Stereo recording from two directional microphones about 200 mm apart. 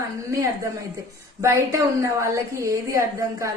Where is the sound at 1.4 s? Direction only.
15° right (ahead or behind).